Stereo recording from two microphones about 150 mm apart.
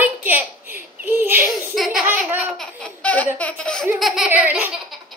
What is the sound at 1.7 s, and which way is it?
Speech, centre (ahead or behind).